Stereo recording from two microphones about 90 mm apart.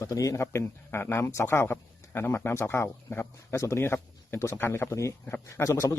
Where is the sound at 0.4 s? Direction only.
30° left (ahead or behind).